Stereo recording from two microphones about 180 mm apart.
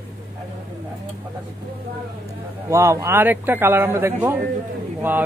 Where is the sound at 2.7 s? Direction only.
15° right (ahead or behind).